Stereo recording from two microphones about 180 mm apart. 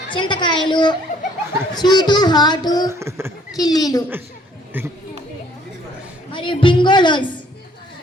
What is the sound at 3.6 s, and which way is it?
Speech, 20° left (ahead or behind).